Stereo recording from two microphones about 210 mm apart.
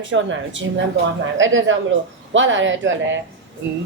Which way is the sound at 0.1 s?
60° right (ahead or behind).